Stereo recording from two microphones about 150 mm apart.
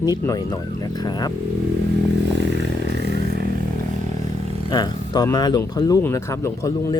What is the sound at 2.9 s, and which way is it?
Vehicle, 90° right.